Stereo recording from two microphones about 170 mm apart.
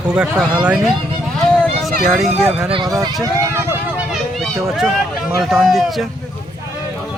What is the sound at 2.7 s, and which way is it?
Speech, 25° right (ahead or behind).